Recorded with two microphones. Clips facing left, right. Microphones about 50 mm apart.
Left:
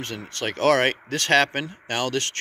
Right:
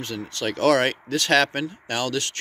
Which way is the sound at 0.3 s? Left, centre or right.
Left.